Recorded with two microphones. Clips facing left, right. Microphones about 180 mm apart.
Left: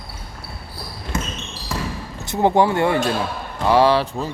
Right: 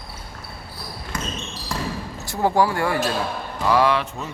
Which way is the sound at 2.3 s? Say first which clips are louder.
Left 3 dB; 20° left (ahead or behind).